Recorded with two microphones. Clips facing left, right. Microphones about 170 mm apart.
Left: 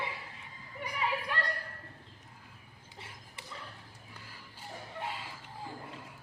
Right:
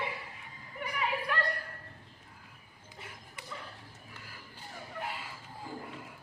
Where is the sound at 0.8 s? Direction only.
30° left (ahead or behind).